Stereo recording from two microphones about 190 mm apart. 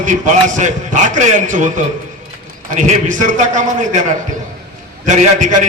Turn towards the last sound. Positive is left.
turn(degrees=-40)  # may be behind; listen again after turning